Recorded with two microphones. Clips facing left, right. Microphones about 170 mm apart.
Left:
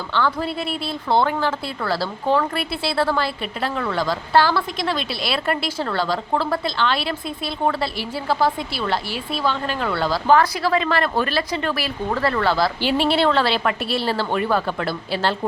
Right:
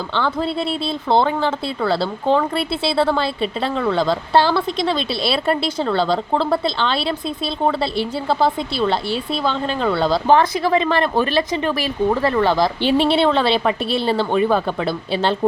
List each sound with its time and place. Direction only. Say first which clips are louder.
0.1 s speech: even; 25° right (ahead or behind)